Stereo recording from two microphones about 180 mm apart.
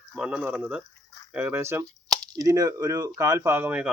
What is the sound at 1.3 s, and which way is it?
Speech, 10° right (ahead or behind).